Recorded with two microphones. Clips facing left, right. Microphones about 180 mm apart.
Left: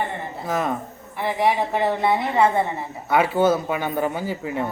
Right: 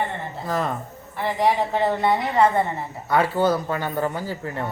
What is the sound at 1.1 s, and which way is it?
A woman's voice, 15° left (ahead or behind).